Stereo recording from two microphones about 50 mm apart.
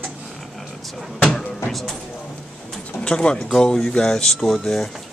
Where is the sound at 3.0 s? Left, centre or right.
Centre.